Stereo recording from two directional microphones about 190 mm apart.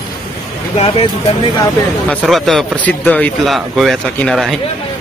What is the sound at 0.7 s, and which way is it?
Speech, 30° left (ahead or behind).